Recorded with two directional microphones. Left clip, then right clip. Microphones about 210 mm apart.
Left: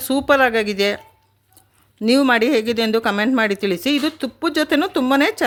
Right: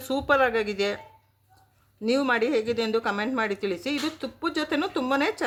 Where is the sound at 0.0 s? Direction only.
35° left (ahead or behind).